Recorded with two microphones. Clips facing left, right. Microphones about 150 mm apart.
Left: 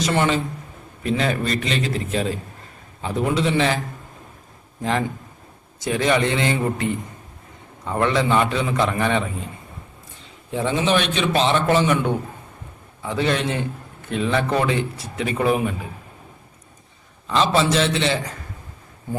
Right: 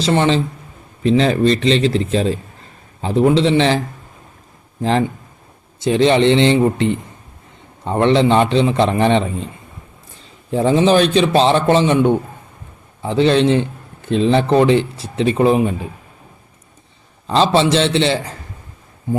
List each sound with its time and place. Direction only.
0.0 s a man's voice: 25° right (ahead or behind)
4.8 s a man's voice: 30° right (ahead or behind)
10.5 s a man's voice: 35° right (ahead or behind)
17.2 s a man's voice: 30° right (ahead or behind)